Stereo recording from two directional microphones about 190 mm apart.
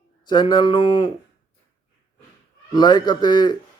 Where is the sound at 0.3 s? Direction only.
25° left (ahead or behind).